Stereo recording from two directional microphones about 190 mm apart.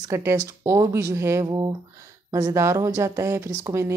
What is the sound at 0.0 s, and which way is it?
A woman's voice, 15° right (ahead or behind).